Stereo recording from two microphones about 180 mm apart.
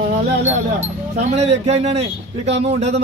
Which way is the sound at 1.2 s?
40° right (ahead or behind).